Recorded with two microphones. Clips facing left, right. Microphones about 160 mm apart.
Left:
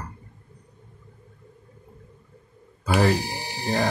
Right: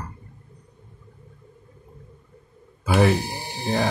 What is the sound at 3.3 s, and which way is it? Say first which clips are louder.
Music: even; 20° right (ahead or behind).